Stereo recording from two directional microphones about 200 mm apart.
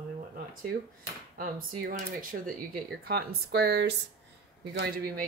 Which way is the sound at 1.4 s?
45° right (ahead or behind).